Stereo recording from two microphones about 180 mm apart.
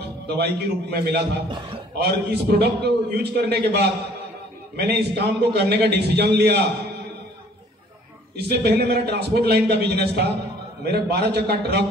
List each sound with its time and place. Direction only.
0.3 s a man's voice: 65° right (ahead or behind)
8.4 s a man's voice: 65° right (ahead or behind)